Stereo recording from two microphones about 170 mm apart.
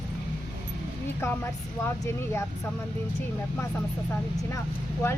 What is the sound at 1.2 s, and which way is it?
Speech, 15° left (ahead or behind).